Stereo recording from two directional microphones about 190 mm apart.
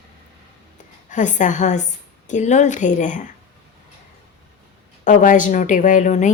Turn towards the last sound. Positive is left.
turn(degrees=40)  # may be behind; listen again after turning